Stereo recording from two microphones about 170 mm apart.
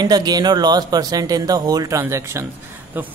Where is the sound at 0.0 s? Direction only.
25° right (ahead or behind).